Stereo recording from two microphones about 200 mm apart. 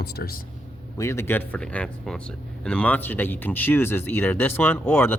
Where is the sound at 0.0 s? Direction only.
50° left (ahead or behind).